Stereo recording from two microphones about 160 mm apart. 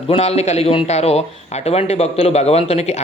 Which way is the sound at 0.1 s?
40° left (ahead or behind).